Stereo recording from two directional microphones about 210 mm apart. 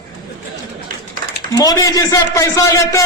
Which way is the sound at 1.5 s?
15° left (ahead or behind).